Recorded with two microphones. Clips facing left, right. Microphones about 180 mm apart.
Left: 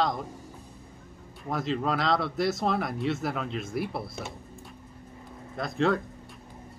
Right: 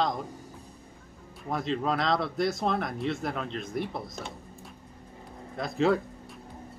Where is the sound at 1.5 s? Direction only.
Centre (ahead or behind).